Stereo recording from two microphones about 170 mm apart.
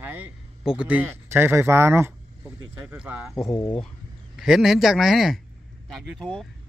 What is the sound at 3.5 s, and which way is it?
Speech, 20° left (ahead or behind).